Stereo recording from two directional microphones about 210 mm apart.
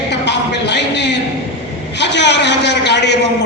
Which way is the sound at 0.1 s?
55° left (ahead or behind).